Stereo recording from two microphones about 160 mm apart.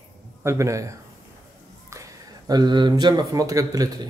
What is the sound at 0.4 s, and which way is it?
A man's voice, 20° right (ahead or behind).